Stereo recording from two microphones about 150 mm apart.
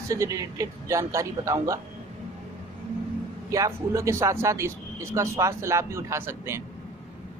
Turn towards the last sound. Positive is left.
turn(degrees=-15)  # may be behind; listen again after turning